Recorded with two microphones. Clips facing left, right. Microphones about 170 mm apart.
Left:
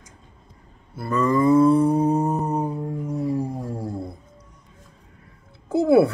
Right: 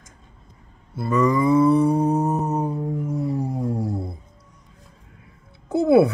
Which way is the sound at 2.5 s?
5° left (ahead or behind).